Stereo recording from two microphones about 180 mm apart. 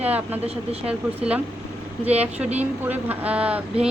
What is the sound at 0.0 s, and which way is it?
A woman's voice, 10° right (ahead or behind).